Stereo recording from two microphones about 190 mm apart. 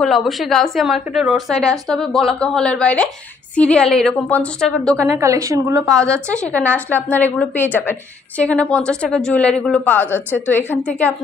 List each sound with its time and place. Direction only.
0.0 s a woman's voice: centre (ahead or behind)
5.0 s a woman's voice: 15° right (ahead or behind)
5.8 s a woman's voice: 5° left (ahead or behind)